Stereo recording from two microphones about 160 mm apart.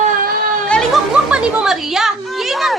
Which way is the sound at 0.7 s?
Centre (ahead or behind).